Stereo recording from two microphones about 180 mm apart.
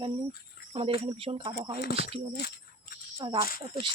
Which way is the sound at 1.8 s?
65° left (ahead or behind).